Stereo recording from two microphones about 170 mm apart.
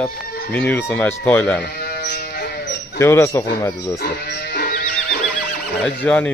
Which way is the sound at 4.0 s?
75° left (ahead or behind).